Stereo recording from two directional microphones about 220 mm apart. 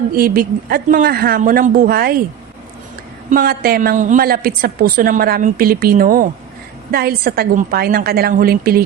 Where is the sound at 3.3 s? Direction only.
45° right (ahead or behind).